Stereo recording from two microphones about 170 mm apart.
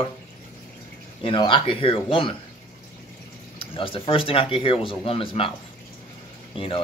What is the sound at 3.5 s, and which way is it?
Speech, 30° left (ahead or behind).